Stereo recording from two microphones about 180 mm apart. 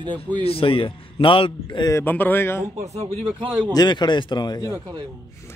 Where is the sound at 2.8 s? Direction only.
35° right (ahead or behind).